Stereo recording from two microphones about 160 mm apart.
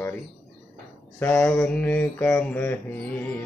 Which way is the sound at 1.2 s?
10° left (ahead or behind).